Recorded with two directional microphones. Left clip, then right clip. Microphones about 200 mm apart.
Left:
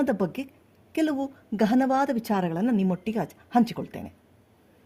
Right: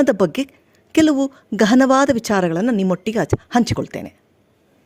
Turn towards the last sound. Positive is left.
turn(degrees=-40)  # may be behind; listen again after turning